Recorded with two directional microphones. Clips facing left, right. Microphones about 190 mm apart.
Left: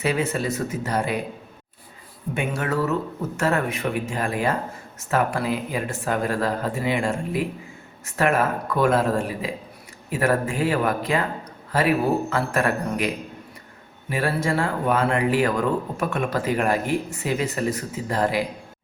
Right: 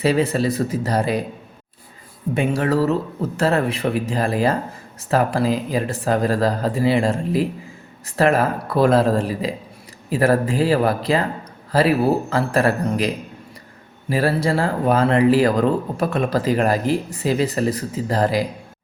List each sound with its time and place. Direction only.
0.0 s speech: 35° right (ahead or behind)
2.3 s speech: 35° right (ahead or behind)
14.1 s speech: 35° right (ahead or behind)